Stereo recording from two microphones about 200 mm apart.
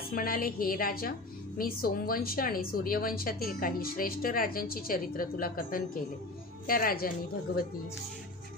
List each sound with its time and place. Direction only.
0.1 s a woman's voice: 45° left (ahead or behind)